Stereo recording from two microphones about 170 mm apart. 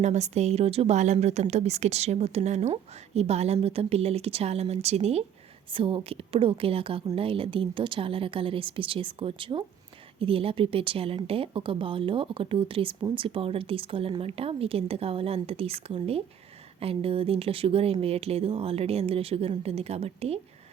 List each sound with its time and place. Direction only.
0.0 s speech: 40° right (ahead or behind)